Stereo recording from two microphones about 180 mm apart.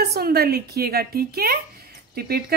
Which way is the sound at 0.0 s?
60° right (ahead or behind).